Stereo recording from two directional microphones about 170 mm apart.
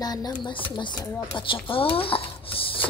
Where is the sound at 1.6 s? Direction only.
30° left (ahead or behind).